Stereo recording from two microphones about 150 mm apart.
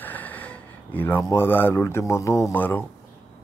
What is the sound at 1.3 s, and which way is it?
Speech, 15° left (ahead or behind).